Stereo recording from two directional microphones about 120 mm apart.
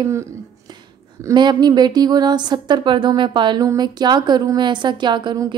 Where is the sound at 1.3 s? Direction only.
35° right (ahead or behind).